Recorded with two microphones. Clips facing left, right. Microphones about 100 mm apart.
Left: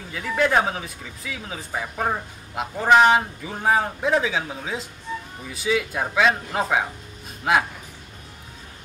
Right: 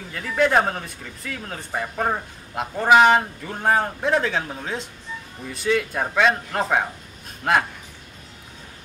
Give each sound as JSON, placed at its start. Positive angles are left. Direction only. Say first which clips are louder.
{"t": 0.1, "sound": "speech", "louder": "right 1 dB", "side_deg": 0}